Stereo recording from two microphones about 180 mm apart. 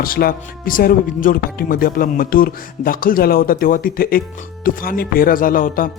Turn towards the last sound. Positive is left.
turn(degrees=50)  # may be behind; listen again after turning